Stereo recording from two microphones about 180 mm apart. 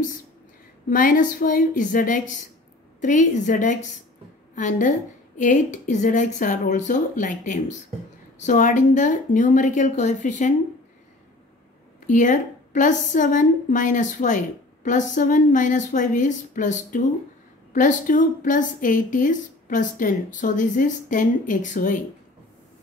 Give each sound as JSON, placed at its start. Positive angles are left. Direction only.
{"t": 0.8, "sound": "a woman's voice", "side_deg": 50}
{"t": 12.1, "sound": "a woman's voice", "side_deg": 45}